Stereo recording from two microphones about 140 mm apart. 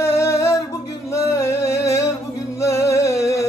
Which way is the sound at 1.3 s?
20° left (ahead or behind).